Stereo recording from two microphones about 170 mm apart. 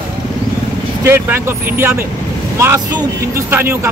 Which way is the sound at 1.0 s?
15° right (ahead or behind).